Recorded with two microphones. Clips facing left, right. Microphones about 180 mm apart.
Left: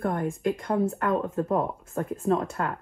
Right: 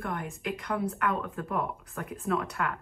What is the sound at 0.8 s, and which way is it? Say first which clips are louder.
A woman's voice: left 5 dB; 45° left (ahead or behind).